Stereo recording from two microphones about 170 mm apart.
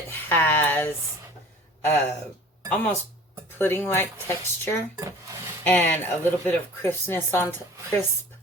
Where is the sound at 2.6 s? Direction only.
10° left (ahead or behind).